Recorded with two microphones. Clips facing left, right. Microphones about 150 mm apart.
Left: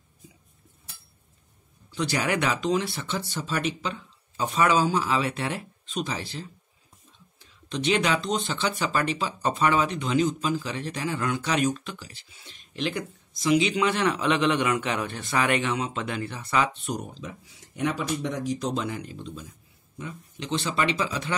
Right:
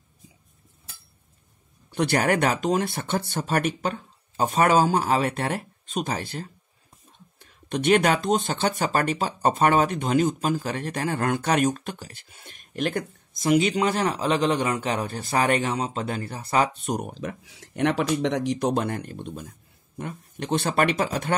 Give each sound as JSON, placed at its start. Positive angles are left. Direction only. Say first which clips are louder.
{"t": 1.9, "sound": "speech", "louder": "right 5 dB", "side_deg": -60}